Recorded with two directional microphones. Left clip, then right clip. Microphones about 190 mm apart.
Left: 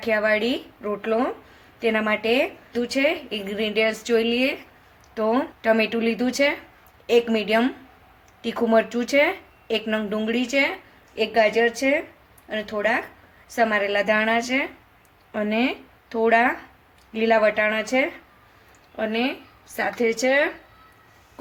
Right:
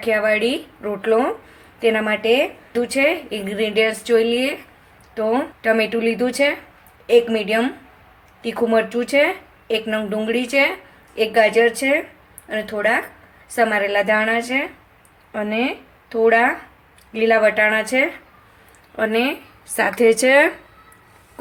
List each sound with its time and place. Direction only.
0.0 s a woman's voice: centre (ahead or behind); by 20.5 s 20° right (ahead or behind)